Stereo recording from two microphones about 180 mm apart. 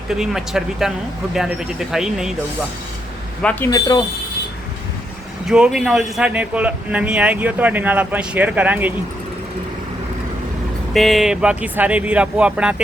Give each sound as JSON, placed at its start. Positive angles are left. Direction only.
{"t": 0.1, "sound": "speech", "side_deg": -5}
{"t": 3.4, "sound": "speech", "side_deg": 10}
{"t": 5.5, "sound": "speech", "side_deg": -5}
{"t": 10.9, "sound": "speech", "side_deg": 0}